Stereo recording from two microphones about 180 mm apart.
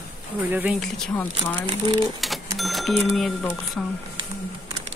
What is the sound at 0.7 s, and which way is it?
Speech, centre (ahead or behind).